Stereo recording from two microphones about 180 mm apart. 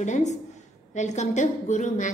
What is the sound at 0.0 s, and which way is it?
A woman's voice, 40° left (ahead or behind).